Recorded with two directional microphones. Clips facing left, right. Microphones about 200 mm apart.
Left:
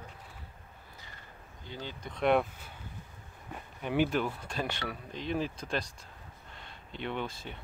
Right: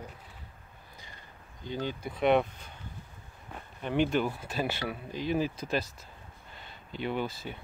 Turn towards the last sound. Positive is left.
turn(degrees=-5)  # may be behind; listen again after turning